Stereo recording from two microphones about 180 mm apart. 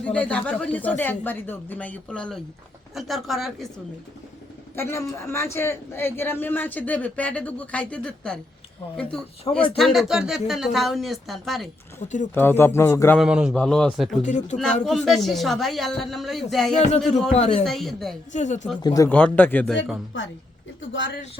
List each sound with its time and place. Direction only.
0.0 s a man's voice: 5° left (ahead or behind)
4.7 s a man's voice: 15° left (ahead or behind)
11.9 s speech: 45° left (ahead or behind)
12.3 s a man's voice: 10° left (ahead or behind)
13.1 s speech: 5° right (ahead or behind)
14.2 s speech: 40° left (ahead or behind)
14.8 s speech: centre (ahead or behind)
16.7 s speech: 40° left (ahead or behind)
17.6 s speech: centre (ahead or behind)
18.3 s speech: 40° left (ahead or behind)
18.8 s speech: 20° left (ahead or behind)
19.0 s a man's voice: 10° left (ahead or behind)
20.1 s speech: 90° left